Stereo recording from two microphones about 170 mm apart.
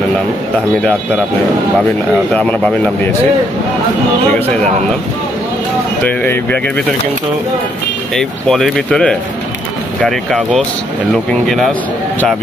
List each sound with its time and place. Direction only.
2.3 s speech: 10° left (ahead or behind)
6.0 s speech: 10° left (ahead or behind)
8.2 s speech: centre (ahead or behind)